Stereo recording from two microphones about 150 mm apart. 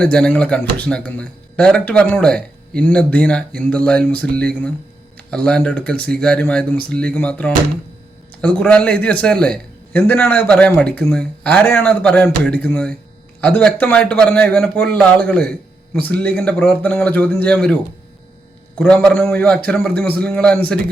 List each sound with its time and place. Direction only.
0.0 s speech: 5° left (ahead or behind)
18.8 s speech: 5° left (ahead or behind)